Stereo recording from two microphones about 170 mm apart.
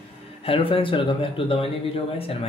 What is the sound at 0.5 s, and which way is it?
Speech, 30° left (ahead or behind).